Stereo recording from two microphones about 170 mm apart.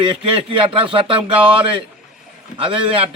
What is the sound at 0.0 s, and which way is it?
A man's voice, 30° right (ahead or behind).